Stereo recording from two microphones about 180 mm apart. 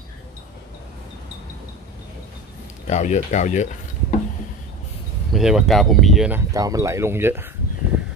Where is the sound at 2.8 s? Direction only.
40° left (ahead or behind).